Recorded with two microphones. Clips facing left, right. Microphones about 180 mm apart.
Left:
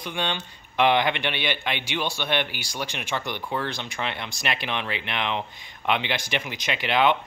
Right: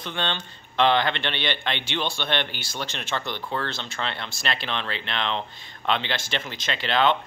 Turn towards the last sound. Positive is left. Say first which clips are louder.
# left 1 dB
turn(degrees=15)  # may be behind; listen again after turning